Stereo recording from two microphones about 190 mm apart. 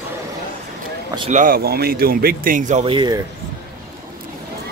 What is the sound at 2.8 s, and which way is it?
Speech, 25° right (ahead or behind).